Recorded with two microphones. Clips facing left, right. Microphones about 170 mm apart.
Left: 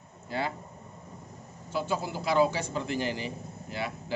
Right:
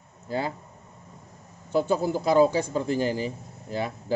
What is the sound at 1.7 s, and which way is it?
A man's voice, 50° right (ahead or behind).